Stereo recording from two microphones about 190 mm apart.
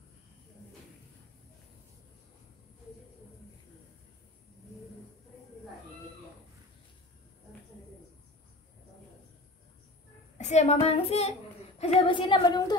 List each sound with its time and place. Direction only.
10.3 s a child's voice: 35° left (ahead or behind)